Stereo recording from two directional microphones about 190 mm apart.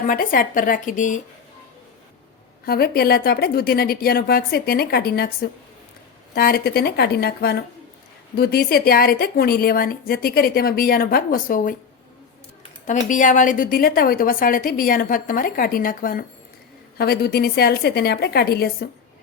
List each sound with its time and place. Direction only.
0.1 s a woman's voice: 50° left (ahead or behind)
2.6 s a woman's voice: 55° left (ahead or behind)
12.9 s a woman's voice: 45° left (ahead or behind)